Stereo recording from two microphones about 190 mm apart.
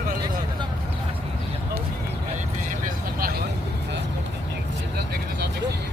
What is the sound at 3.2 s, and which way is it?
Vehicle, 50° right (ahead or behind).